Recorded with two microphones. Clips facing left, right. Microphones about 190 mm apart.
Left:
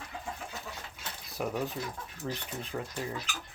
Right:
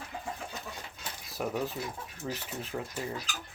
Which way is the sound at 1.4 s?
Centre (ahead or behind).